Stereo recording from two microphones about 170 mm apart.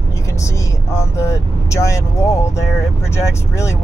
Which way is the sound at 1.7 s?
15° left (ahead or behind).